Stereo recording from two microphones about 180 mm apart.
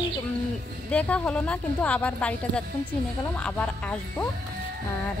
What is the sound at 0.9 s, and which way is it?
A woman's voice, 5° left (ahead or behind).